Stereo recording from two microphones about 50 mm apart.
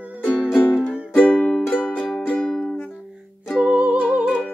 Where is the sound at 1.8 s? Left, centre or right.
Left.